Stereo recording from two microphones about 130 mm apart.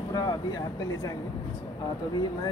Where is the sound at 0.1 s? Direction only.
30° left (ahead or behind).